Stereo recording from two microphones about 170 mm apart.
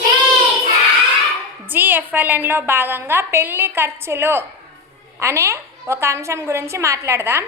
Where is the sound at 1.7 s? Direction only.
10° right (ahead or behind).